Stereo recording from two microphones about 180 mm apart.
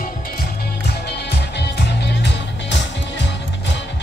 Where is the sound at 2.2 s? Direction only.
80° left.